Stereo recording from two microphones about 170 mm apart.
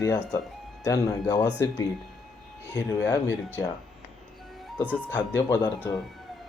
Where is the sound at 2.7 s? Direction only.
20° left (ahead or behind).